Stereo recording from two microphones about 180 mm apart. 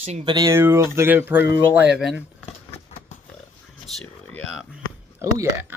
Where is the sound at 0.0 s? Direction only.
35° right (ahead or behind).